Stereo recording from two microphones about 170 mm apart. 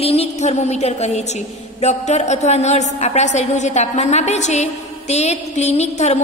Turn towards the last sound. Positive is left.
turn(degrees=40)  # may be behind; listen again after turning